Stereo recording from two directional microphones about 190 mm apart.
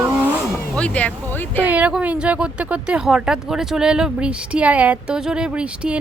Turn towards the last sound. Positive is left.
turn(degrees=-5)  # may be behind; listen again after turning